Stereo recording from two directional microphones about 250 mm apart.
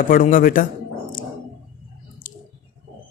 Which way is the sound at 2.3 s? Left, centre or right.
Left.